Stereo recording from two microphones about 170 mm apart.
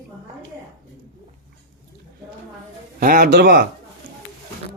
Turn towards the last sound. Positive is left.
turn(degrees=-70)  # may be behind; listen again after turning